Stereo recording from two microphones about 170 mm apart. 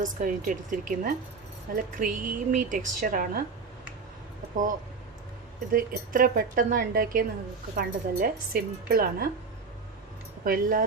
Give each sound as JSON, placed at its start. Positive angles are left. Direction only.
{"t": 0.0, "sound": "a woman's voice", "side_deg": -50}
{"t": 5.7, "sound": "a woman's voice", "side_deg": -55}
{"t": 10.4, "sound": "a woman's voice", "side_deg": -55}